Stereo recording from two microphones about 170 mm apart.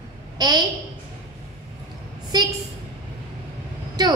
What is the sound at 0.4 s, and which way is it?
Speech, 25° right (ahead or behind).